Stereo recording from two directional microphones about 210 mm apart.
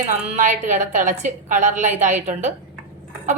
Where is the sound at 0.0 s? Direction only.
35° right (ahead or behind).